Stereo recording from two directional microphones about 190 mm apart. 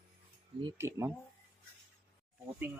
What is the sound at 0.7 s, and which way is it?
Speech, 15° right (ahead or behind).